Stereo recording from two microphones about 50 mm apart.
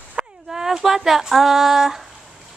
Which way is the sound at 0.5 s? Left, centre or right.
Centre.